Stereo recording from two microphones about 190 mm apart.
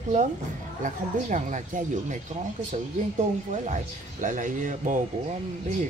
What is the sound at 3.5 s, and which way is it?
Speech, 40° right (ahead or behind).